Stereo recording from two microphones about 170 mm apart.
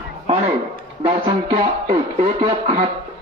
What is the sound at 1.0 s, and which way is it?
Music, 30° right (ahead or behind).